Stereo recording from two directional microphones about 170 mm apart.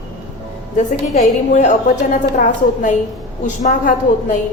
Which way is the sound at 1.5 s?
45° left (ahead or behind).